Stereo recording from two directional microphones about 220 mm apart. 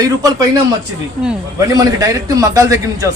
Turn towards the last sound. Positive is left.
turn(degrees=-15)  # may be behind; listen again after turning